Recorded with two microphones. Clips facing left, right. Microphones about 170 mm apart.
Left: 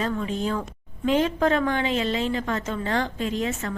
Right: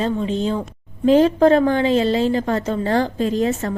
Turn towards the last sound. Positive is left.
turn(degrees=-35)  # may be behind; listen again after turning